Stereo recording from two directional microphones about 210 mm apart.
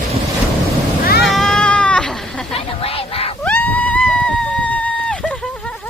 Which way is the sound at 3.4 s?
5° left (ahead or behind).